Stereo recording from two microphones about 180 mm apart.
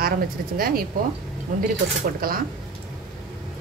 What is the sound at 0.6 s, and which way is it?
Speech, 55° right (ahead or behind).